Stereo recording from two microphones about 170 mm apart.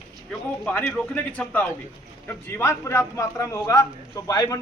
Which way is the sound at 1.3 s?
10° left (ahead or behind).